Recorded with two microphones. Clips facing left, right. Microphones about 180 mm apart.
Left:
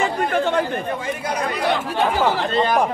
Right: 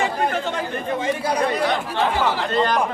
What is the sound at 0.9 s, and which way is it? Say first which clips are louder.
Speech: right 3 dB; 25° right (ahead or behind).